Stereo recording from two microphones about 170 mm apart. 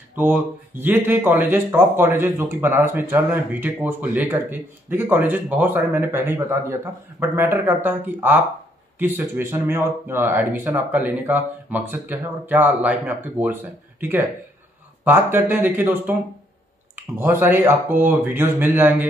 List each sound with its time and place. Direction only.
0.1 s a man's voice: 10° right (ahead or behind)